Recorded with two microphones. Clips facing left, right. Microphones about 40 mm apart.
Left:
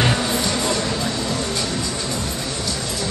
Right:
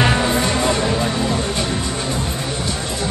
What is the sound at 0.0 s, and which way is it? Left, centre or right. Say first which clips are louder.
Music: right 3 dB; right.